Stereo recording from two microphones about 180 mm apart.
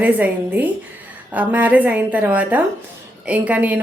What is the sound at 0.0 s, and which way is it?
A woman's voice, 10° right (ahead or behind).